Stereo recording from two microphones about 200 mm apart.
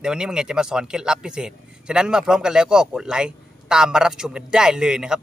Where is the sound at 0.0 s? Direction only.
5° right (ahead or behind).